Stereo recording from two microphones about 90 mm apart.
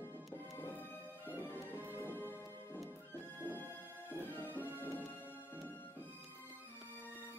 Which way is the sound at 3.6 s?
20° left (ahead or behind).